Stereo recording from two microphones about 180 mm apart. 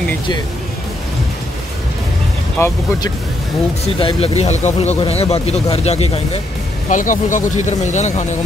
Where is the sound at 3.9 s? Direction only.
30° left (ahead or behind).